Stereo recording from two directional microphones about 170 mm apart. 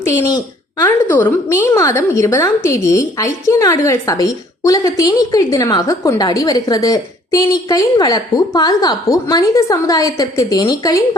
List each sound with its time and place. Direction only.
0.8 s a woman's voice: 10° left (ahead or behind)